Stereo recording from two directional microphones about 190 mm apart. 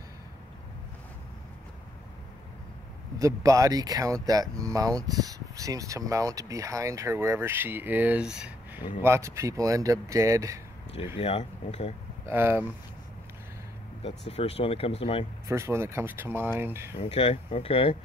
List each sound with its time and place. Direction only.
3.2 s speech: 15° right (ahead or behind)
11.1 s speech: 30° left (ahead or behind)
12.3 s speech: 10° right (ahead or behind)
14.0 s speech: 30° left (ahead or behind)
15.4 s speech: 15° right (ahead or behind)
16.9 s speech: 30° left (ahead or behind)